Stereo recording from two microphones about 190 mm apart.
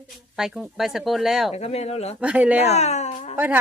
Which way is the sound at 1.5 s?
35° left (ahead or behind).